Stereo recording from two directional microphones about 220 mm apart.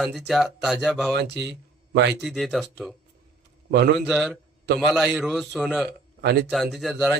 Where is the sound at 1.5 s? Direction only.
50° right (ahead or behind).